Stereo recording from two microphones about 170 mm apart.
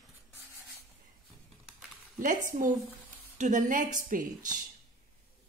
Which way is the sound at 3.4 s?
50° right (ahead or behind).